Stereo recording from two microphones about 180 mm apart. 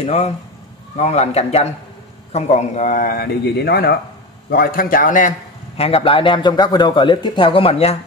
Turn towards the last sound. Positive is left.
turn(degrees=30)  # may be behind; listen again after turning